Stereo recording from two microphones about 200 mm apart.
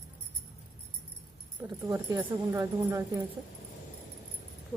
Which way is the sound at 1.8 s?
15° right (ahead or behind).